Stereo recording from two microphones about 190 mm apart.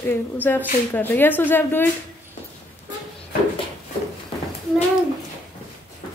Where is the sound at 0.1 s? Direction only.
10° left (ahead or behind).